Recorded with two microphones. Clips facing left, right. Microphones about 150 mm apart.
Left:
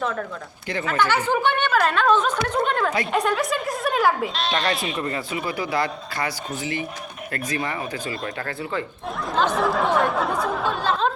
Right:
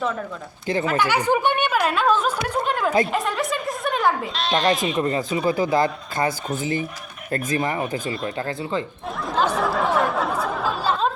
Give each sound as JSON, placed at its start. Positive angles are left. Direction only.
{"t": 0.9, "sound": "speech", "side_deg": -10}
{"t": 4.9, "sound": "speech", "side_deg": -30}
{"t": 5.5, "sound": "speech", "side_deg": -45}
{"t": 7.3, "sound": "speech", "side_deg": -30}
{"t": 9.3, "sound": "a sound", "side_deg": -5}